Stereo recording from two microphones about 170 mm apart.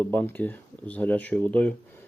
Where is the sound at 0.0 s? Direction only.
10° left (ahead or behind).